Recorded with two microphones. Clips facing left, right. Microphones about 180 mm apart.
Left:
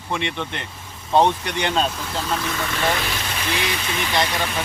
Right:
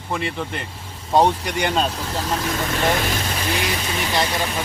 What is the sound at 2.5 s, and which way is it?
Speech, 45° right (ahead or behind).